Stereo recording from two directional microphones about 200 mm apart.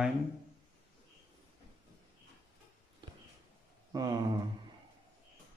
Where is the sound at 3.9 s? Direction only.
20° right (ahead or behind).